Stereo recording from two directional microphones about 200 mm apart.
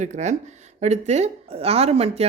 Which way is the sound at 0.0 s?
35° right (ahead or behind).